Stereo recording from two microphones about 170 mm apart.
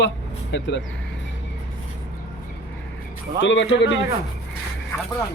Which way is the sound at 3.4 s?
90° left.